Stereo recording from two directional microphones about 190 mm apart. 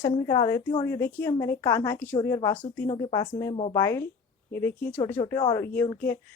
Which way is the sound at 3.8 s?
15° left (ahead or behind).